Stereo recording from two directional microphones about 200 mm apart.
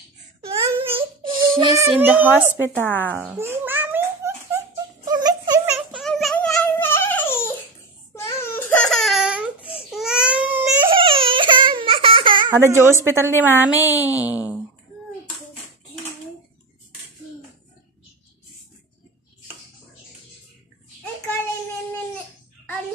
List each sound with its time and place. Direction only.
0.9 s child singing: 25° right (ahead or behind)
1.6 s a woman's voice: 15° right (ahead or behind)
2.8 s speech: 10° left (ahead or behind)
3.1 s babbling: 5° right (ahead or behind)
5.0 s a sound: 20° right (ahead or behind)
5.9 s a sound: centre (ahead or behind)
10.9 s baby cry: 25° right (ahead or behind)
12.5 s a woman's voice: 15° right (ahead or behind)